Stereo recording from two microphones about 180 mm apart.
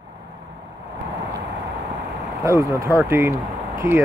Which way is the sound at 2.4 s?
15° right (ahead or behind).